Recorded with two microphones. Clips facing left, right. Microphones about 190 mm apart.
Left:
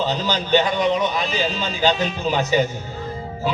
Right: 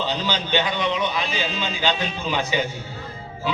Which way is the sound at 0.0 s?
45° left (ahead or behind).